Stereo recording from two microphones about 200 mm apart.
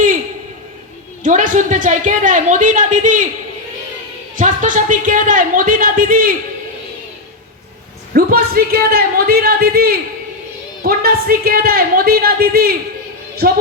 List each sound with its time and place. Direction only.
1.2 s a woman's voice: 40° right (ahead or behind)
4.4 s a woman's voice: 40° right (ahead or behind)
8.1 s a woman's voice: 50° right (ahead or behind)